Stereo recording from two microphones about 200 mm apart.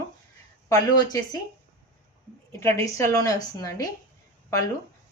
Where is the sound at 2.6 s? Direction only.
15° left (ahead or behind).